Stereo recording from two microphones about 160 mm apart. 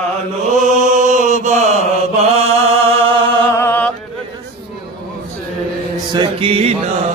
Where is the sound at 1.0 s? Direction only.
50° right (ahead or behind).